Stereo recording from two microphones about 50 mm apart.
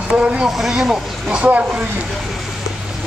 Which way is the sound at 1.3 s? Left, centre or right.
Right.